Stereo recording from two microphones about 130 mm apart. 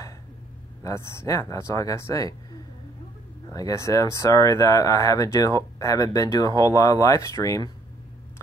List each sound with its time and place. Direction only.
0.8 s speech: 25° left (ahead or behind)